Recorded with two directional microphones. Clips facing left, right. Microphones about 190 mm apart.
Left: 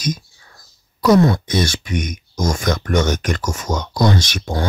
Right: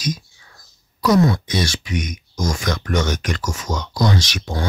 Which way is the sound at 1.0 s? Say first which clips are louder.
Left 3 dB; 55° left (ahead or behind).